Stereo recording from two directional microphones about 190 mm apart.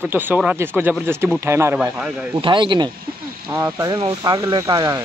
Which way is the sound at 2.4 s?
25° right (ahead or behind).